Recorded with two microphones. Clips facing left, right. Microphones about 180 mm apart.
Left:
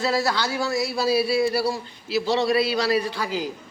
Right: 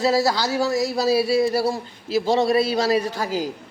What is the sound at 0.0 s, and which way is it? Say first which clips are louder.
A man's voice: right 4 dB; 40° right (ahead or behind).